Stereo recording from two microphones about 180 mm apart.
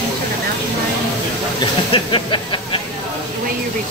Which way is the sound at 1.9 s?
25° left (ahead or behind).